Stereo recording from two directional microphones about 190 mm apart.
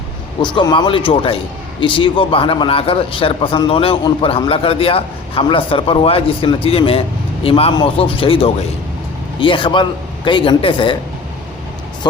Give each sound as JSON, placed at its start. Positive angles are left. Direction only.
{"t": 0.4, "sound": "a man's voice", "side_deg": 25}